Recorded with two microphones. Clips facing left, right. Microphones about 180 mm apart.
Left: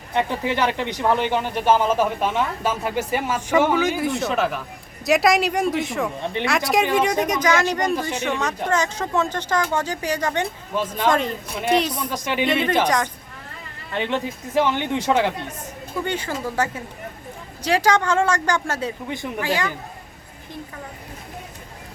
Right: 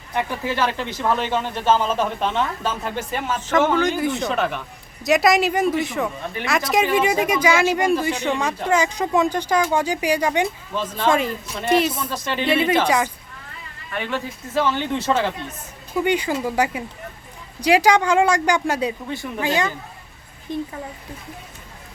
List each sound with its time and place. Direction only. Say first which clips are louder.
0.1 s speech: left 2 dB; 20° left (ahead or behind); by 10.5 s 10° right (ahead or behind)
10.8 s speech: left 1 dB; 10° left (ahead or behind)
11.8 s speech: right 2 dB; 5° right (ahead or behind)
12.0 s speech: left 2 dB; 15° left (ahead or behind)
12.5 s speech: right 4 dB; 5° right (ahead or behind)
13.9 s speech: left 2 dB; 20° left (ahead or behind)
16.0 s speech: right 6 dB; 15° right (ahead or behind)
19.0 s speech: even; 20° left (ahead or behind)
19.4 s speech: right 3 dB; 20° right (ahead or behind)